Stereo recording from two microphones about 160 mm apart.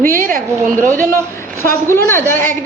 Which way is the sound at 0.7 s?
10° left (ahead or behind).